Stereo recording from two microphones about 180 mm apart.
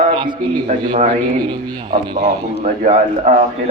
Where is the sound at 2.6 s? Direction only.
40° right (ahead or behind).